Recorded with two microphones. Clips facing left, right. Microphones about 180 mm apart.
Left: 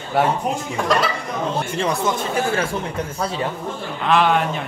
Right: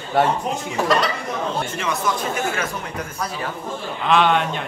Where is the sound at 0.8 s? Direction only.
Centre (ahead or behind).